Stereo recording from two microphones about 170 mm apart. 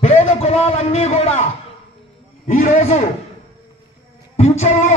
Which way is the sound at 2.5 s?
45° left (ahead or behind).